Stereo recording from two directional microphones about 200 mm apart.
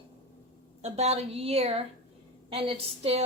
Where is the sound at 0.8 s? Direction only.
30° right (ahead or behind).